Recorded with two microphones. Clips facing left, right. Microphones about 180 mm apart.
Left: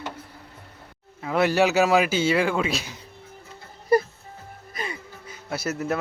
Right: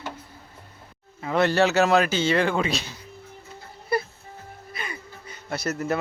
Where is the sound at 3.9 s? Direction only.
40° left (ahead or behind).